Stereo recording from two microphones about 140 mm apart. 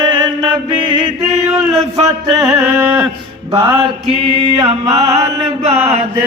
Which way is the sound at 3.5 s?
35° right (ahead or behind).